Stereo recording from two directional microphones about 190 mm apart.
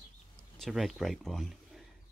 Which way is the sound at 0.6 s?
Centre (ahead or behind).